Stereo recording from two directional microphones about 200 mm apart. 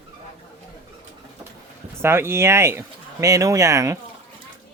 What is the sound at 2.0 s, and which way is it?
Speech, 10° right (ahead or behind).